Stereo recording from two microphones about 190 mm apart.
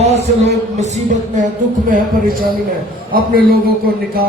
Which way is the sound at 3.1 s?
50° right (ahead or behind).